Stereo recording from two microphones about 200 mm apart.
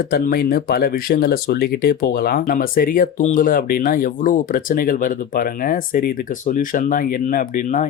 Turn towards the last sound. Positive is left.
turn(degrees=40)  # may be behind; listen again after turning